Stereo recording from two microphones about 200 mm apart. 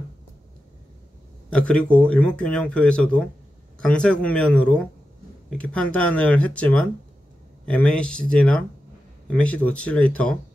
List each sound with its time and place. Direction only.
1.5 s speech: 5° left (ahead or behind)